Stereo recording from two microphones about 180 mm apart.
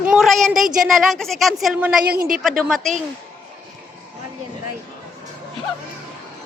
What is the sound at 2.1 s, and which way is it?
Speech, 55° right (ahead or behind).